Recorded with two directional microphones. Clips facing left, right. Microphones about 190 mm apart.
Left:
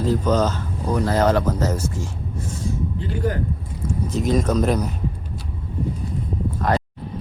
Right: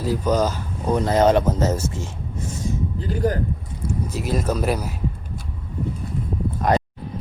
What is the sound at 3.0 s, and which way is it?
Speech, 40° right (ahead or behind).